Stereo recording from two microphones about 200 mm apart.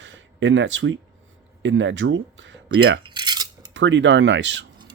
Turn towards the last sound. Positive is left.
turn(degrees=-65)  # may be behind; listen again after turning